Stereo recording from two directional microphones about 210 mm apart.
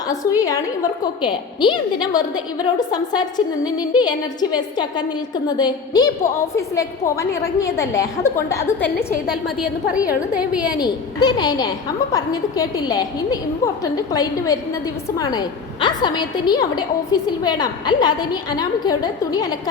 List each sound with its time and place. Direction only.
0.1 s a woman's voice: 15° left (ahead or behind)
9.3 s a woman's voice: 5° right (ahead or behind)
10.6 s a woman's voice: 20° left (ahead or behind)